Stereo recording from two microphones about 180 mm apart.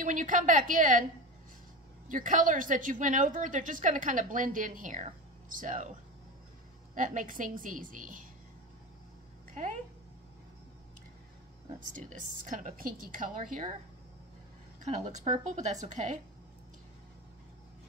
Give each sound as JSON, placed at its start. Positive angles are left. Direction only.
{"t": 0.0, "sound": "a woman's voice", "side_deg": -45}
{"t": 2.0, "sound": "a woman's voice", "side_deg": -45}
{"t": 7.0, "sound": "a woman's voice", "side_deg": -45}
{"t": 9.5, "sound": "speech", "side_deg": -45}
{"t": 11.9, "sound": "a woman's voice", "side_deg": -45}
{"t": 15.0, "sound": "a woman's voice", "side_deg": -40}